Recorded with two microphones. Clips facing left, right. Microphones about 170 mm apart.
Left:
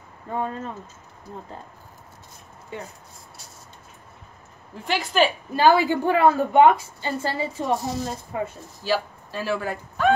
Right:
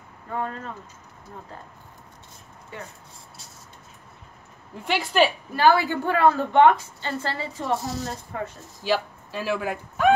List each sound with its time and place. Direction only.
0.3 s a woman's voice: 15° left (ahead or behind)
4.8 s a woman's voice: centre (ahead or behind)
5.6 s a woman's voice: 15° left (ahead or behind)
8.8 s speech: 40° left (ahead or behind)
9.3 s speech: 5° right (ahead or behind)